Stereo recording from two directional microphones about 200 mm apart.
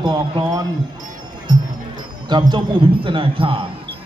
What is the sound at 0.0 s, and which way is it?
Speech, 25° right (ahead or behind).